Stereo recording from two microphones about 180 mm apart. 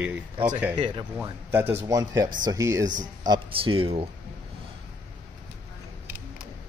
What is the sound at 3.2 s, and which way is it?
Speech, 30° right (ahead or behind).